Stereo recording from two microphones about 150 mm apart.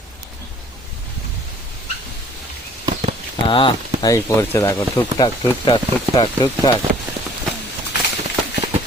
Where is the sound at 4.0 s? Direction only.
20° left (ahead or behind).